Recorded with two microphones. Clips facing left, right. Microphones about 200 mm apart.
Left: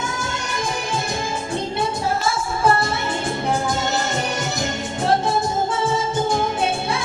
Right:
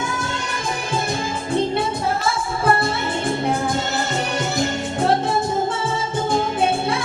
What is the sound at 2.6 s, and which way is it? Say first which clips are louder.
Music: left 1 dB; 60° right (ahead or behind).